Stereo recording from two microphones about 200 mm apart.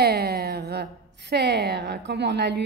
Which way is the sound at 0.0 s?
50° right (ahead or behind).